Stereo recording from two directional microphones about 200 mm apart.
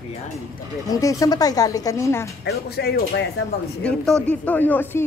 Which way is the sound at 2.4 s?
55° left (ahead or behind).